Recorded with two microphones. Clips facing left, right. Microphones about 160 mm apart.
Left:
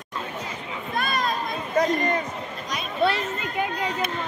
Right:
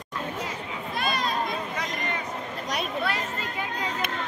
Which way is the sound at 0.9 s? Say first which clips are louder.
Left 2 dB; 50° left (ahead or behind).